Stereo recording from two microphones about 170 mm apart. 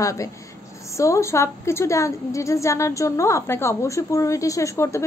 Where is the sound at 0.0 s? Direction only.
20° left (ahead or behind).